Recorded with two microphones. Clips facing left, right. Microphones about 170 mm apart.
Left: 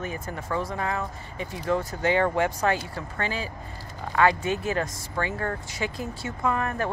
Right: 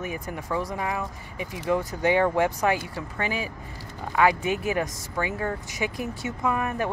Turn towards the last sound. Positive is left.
turn(degrees=-15)  # may be behind; listen again after turning